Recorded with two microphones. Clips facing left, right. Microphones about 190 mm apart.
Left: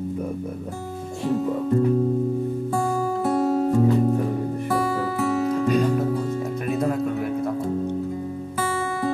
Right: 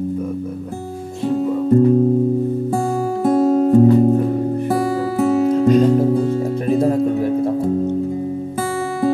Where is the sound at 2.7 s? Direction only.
45° right (ahead or behind).